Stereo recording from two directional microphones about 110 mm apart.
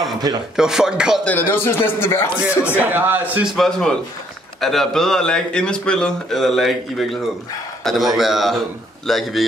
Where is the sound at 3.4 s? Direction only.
Centre (ahead or behind).